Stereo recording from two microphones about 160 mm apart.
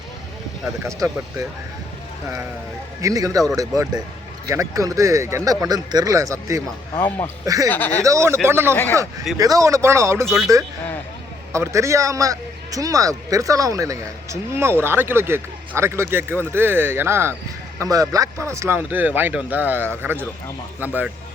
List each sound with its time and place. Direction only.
3.0 s speech: 20° right (ahead or behind)
6.9 s speech: 15° left (ahead or behind)
7.4 s speech: 20° right (ahead or behind)
7.7 s speech: 10° left (ahead or behind)
8.0 s a man's voice: 20° right (ahead or behind)
8.7 s speech: 10° left (ahead or behind)
9.4 s a man's voice: 20° right (ahead or behind)
11.5 s a man's voice: 20° right (ahead or behind)